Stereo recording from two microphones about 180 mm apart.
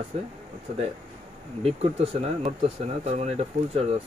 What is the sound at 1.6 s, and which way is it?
Speech, 35° right (ahead or behind).